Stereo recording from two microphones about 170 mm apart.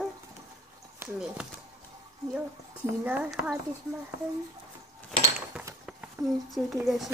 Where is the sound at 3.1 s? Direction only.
10° right (ahead or behind).